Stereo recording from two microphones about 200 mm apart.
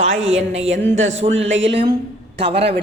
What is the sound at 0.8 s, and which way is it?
Speech, 60° right (ahead or behind).